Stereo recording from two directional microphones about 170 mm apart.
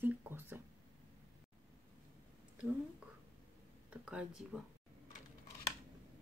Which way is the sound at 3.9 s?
5° right (ahead or behind).